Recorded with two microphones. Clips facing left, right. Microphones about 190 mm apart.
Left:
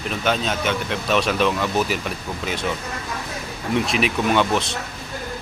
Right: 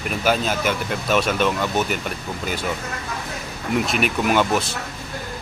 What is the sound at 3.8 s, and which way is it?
Speech, centre (ahead or behind).